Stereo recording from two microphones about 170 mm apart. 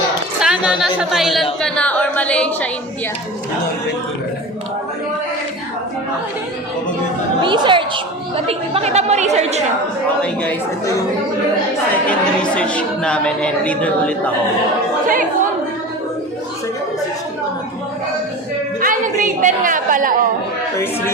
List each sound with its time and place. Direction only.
0.3 s a woman's voice: 5° right (ahead or behind)
7.4 s a woman's voice: 30° right (ahead or behind)
12.0 s speech: 5° left (ahead or behind)
15.0 s speech: 55° right (ahead or behind)
18.8 s a sound: 55° right (ahead or behind)